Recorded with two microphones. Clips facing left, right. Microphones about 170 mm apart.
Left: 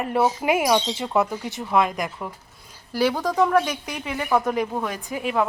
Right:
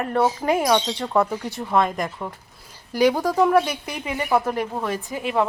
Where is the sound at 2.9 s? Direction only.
15° right (ahead or behind).